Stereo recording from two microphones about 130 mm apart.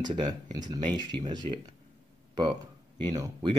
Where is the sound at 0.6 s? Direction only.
35° right (ahead or behind).